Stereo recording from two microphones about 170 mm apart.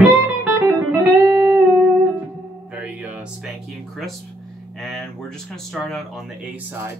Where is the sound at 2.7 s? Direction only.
5° right (ahead or behind).